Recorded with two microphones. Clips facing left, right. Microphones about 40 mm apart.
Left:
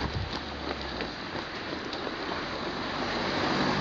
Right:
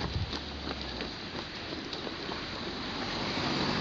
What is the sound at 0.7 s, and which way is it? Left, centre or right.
Boat, centre.